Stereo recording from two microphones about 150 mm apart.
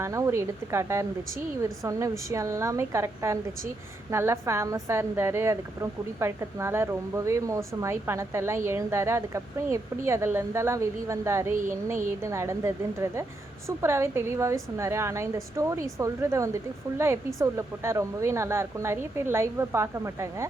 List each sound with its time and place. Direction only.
0.0 s a woman's voice: 20° right (ahead or behind)